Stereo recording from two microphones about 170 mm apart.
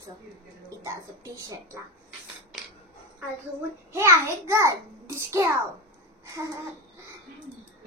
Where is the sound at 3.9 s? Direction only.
15° right (ahead or behind).